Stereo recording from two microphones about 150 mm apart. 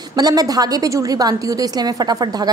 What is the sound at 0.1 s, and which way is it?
A woman's voice, 25° right (ahead or behind).